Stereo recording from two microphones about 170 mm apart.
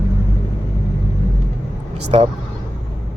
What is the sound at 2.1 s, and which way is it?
Speech, 35° right (ahead or behind).